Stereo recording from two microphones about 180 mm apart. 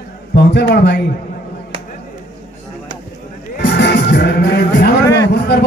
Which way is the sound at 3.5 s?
70° left (ahead or behind).